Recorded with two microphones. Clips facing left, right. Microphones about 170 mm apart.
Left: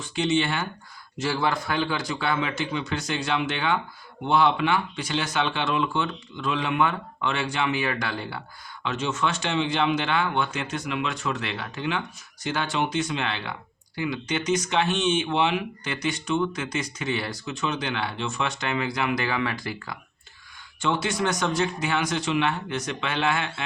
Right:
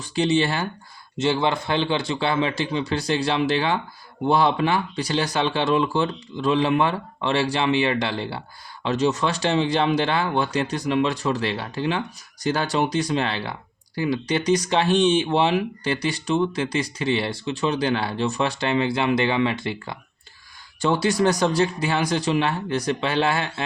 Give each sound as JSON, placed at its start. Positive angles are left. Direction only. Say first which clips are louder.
{"t": 0.0, "sound": "speech", "louder": "right 3 dB", "side_deg": -35}
{"t": 1.2, "sound": "speech", "louder": "right 4 dB", "side_deg": -25}
{"t": 8.8, "sound": "speech", "louder": "right 5 dB", "side_deg": -35}
{"t": 20.8, "sound": "speech", "louder": "right 6 dB", "side_deg": -35}